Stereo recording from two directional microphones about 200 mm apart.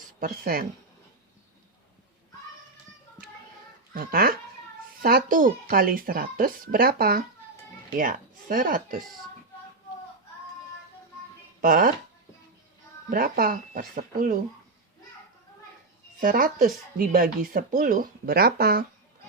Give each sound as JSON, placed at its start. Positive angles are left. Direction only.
{"t": 0.2, "sound": "speech", "side_deg": -50}
{"t": 3.9, "sound": "speech", "side_deg": -45}
{"t": 11.6, "sound": "speech", "side_deg": -45}
{"t": 13.1, "sound": "speech", "side_deg": -45}
{"t": 16.2, "sound": "speech", "side_deg": -45}